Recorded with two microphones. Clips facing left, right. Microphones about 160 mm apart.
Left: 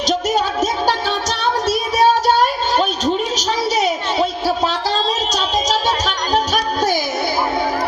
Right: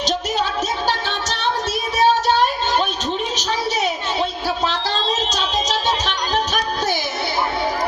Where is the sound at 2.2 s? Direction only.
40° left (ahead or behind).